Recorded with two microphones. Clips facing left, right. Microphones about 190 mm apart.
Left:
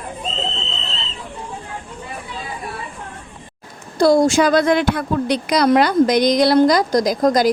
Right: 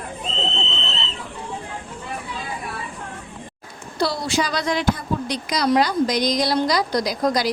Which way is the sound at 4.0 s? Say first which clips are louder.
Left 10 dB; 45° left (ahead or behind).